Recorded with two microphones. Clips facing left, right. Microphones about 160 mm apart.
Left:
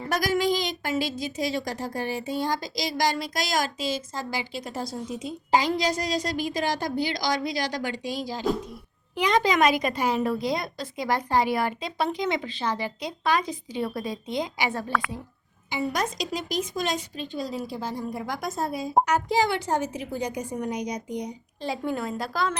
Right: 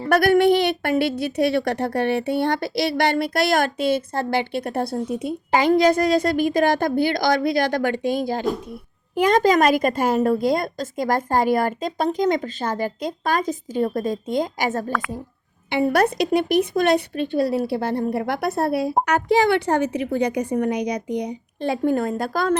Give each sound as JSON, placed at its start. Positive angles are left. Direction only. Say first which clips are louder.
{"t": 0.1, "sound": "a woman's voice", "louder": "right 9 dB", "side_deg": -60}
{"t": 15.7, "sound": "speech", "louder": "right 9 dB", "side_deg": -60}